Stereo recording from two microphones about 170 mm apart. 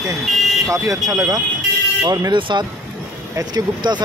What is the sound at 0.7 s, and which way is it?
Speech, 20° right (ahead or behind).